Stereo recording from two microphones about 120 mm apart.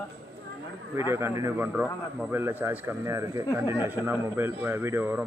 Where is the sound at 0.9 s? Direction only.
20° right (ahead or behind).